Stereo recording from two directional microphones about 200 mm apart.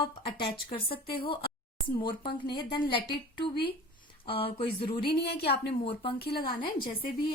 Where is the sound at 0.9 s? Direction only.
50° left (ahead or behind).